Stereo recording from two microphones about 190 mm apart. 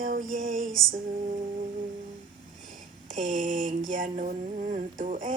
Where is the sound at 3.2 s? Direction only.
40° right (ahead or behind).